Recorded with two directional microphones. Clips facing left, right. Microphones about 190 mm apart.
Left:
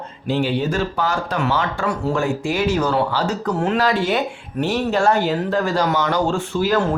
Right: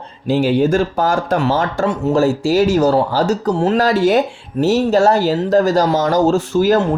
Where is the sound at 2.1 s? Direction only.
35° right (ahead or behind).